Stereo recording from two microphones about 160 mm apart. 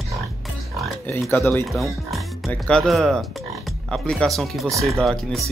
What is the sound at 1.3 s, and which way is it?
Speech, 10° left (ahead or behind).